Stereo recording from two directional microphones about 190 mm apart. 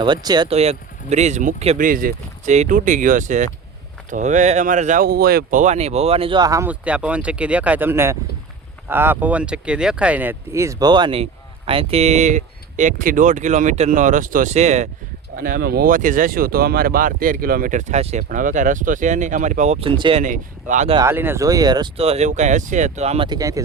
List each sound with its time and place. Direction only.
0.0 s speech: 20° right (ahead or behind)
0.5 s speech: 35° right (ahead or behind)
5.0 s speech: 55° right (ahead or behind); by 14.8 s 35° right (ahead or behind)
15.4 s speech: 50° right (ahead or behind); by 20.2 s 30° right (ahead or behind)
20.2 s speech: 40° right (ahead or behind)
20.9 s speech: 15° right (ahead or behind)